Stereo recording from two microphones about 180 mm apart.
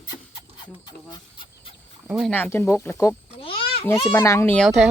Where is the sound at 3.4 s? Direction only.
30° left (ahead or behind).